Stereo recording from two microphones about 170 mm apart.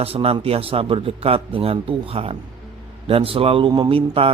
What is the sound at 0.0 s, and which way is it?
A man's voice, 35° right (ahead or behind).